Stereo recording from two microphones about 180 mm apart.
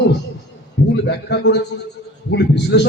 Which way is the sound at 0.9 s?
70° left (ahead or behind).